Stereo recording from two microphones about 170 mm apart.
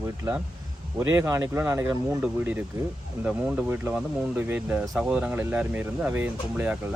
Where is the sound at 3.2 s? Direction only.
10° right (ahead or behind).